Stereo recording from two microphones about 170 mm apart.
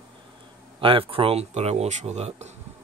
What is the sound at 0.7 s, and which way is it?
Speech, 30° right (ahead or behind).